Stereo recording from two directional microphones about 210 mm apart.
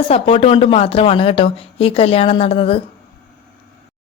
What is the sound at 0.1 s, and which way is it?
Speech, 25° left (ahead or behind).